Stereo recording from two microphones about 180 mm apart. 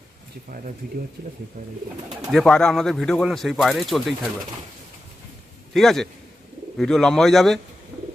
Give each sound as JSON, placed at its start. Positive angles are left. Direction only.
{"t": 1.2, "sound": "speech", "side_deg": -60}
{"t": 2.3, "sound": "speech", "side_deg": 5}
{"t": 5.7, "sound": "speech", "side_deg": 0}